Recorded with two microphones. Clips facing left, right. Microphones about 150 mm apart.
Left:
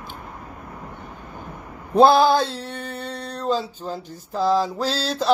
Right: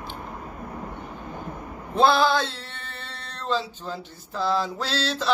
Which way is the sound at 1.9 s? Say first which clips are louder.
Left 5 dB; 45° left (ahead or behind).